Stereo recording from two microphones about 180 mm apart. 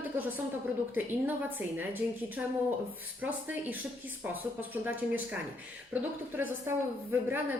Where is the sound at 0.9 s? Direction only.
10° right (ahead or behind).